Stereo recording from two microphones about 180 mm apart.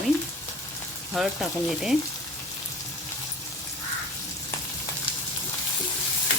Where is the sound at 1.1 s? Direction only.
Centre (ahead or behind).